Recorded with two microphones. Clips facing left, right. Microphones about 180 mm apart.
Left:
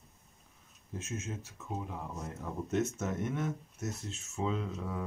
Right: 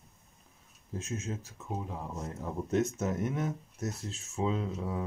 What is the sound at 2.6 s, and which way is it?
Speech, 35° right (ahead or behind).